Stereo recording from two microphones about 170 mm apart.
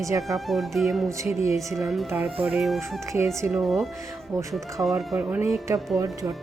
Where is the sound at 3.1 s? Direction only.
15° right (ahead or behind).